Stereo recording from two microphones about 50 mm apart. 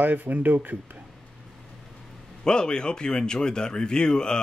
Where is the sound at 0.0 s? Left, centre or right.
Right.